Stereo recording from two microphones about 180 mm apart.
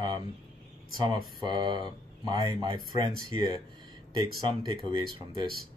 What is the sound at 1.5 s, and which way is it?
Speech, 25° right (ahead or behind).